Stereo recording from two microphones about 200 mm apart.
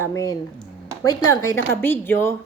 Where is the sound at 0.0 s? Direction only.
15° left (ahead or behind).